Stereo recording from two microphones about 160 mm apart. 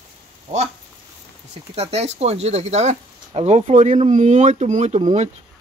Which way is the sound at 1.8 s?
40° right (ahead or behind).